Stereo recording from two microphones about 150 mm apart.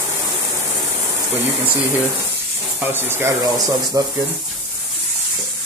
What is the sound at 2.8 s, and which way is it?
Speech, 15° right (ahead or behind).